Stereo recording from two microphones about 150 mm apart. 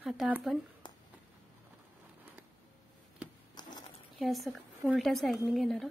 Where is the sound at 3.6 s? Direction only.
30° left (ahead or behind).